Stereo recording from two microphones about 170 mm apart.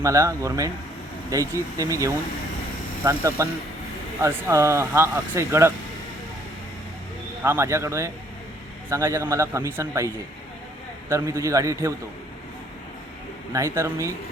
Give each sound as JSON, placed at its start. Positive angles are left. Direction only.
{"t": 0.0, "sound": "speech", "side_deg": -20}
{"t": 7.4, "sound": "speech", "side_deg": -15}
{"t": 11.1, "sound": "speech", "side_deg": -15}
{"t": 13.5, "sound": "speech", "side_deg": -20}